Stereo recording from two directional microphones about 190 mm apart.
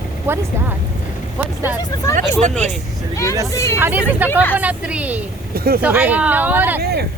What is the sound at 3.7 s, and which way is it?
Speech, 10° right (ahead or behind).